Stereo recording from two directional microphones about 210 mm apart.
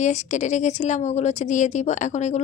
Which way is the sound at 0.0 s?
35° left (ahead or behind).